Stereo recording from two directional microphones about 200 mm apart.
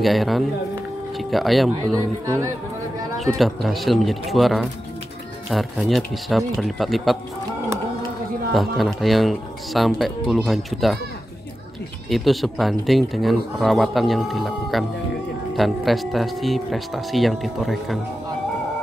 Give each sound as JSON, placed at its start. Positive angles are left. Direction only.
{"t": 0.0, "sound": "speech", "side_deg": 0}
{"t": 2.2, "sound": "speech", "side_deg": -15}
{"t": 3.2, "sound": "speech", "side_deg": 0}
{"t": 8.5, "sound": "speech", "side_deg": 0}
{"t": 12.1, "sound": "speech", "side_deg": 0}